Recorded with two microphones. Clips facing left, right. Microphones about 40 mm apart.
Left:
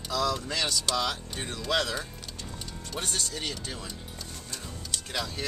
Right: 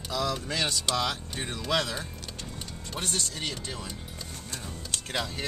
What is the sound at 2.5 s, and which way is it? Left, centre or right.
Music, right.